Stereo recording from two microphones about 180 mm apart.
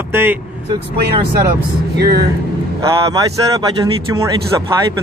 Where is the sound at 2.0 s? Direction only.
60° right (ahead or behind).